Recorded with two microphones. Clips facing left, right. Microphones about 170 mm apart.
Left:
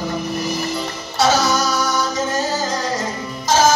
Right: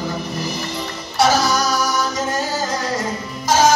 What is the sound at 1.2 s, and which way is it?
Music, 25° left (ahead or behind).